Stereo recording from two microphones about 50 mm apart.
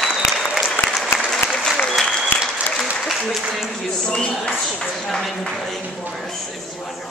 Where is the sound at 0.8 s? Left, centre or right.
Left.